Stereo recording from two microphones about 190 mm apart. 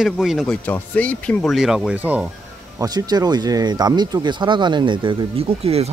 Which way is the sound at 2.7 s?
20° right (ahead or behind).